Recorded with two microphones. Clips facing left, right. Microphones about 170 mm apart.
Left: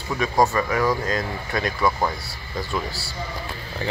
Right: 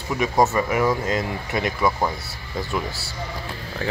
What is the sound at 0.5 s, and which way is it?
Speech, 20° right (ahead or behind).